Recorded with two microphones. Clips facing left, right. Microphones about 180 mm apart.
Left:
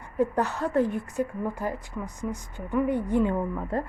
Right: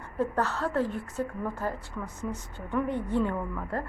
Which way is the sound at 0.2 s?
15° left (ahead or behind).